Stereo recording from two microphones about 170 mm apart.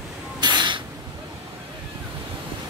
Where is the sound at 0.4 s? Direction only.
25° right (ahead or behind).